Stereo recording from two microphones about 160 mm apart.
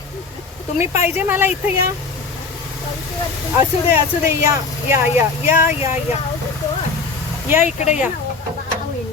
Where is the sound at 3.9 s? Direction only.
20° right (ahead or behind).